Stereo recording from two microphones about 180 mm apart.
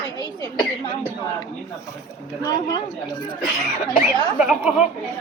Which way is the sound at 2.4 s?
20° left (ahead or behind).